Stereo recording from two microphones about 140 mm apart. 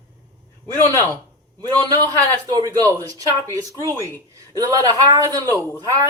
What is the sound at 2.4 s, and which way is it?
A man's voice, 30° right (ahead or behind).